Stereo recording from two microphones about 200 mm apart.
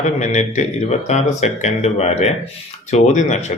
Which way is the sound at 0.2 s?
35° left (ahead or behind).